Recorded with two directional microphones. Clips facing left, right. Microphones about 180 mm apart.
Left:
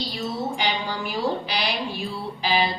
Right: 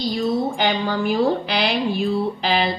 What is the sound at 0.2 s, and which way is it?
A woman's voice, 50° right (ahead or behind).